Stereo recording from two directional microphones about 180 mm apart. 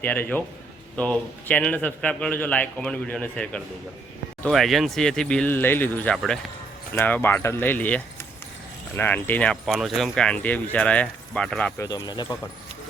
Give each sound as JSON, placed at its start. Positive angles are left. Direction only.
{"t": 0.0, "sound": "speech", "side_deg": 10}
{"t": 11.8, "sound": "speech", "side_deg": 20}